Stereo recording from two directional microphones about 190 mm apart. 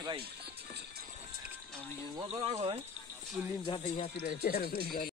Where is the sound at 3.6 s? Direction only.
25° left (ahead or behind).